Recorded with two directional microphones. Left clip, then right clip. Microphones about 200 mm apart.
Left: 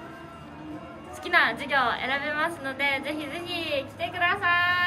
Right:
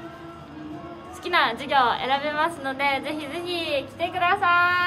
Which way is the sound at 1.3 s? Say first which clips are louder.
Even; 25° right (ahead or behind).